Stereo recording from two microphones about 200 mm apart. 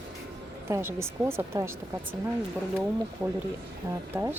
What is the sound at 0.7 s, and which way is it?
Speech, 10° right (ahead or behind).